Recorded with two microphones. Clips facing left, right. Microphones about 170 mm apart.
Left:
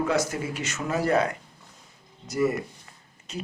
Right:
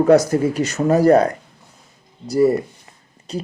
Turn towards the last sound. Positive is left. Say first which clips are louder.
# right 8 dB
turn(degrees=-35)  # may be behind; listen again after turning